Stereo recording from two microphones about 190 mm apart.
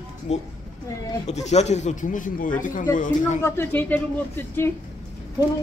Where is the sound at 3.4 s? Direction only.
10° left (ahead or behind).